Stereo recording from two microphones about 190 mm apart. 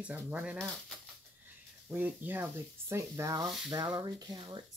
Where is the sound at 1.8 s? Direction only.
10° right (ahead or behind).